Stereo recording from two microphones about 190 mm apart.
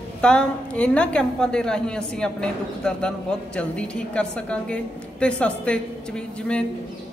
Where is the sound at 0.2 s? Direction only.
5° left (ahead or behind).